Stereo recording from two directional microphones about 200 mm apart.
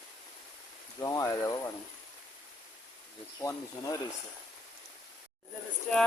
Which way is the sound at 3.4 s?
15° left (ahead or behind).